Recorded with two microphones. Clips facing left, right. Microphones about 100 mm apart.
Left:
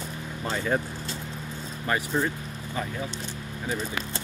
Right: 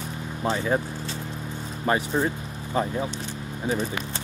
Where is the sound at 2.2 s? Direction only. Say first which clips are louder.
Right 2 dB; 30° right (ahead or behind).